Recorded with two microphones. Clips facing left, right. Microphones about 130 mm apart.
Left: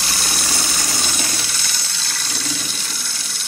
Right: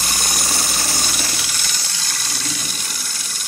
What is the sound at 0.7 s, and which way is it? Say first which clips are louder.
Engine: even; 5° right (ahead or behind).